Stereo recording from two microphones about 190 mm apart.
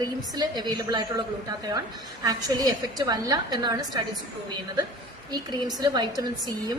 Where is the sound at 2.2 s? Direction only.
20° right (ahead or behind).